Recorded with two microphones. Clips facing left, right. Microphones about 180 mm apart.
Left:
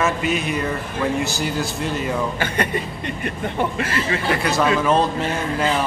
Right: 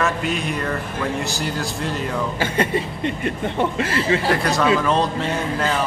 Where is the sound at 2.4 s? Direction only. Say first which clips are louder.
Right 2 dB; 25° right (ahead or behind).